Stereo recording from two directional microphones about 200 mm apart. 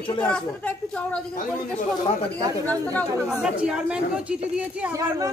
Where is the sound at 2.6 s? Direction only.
10° left (ahead or behind).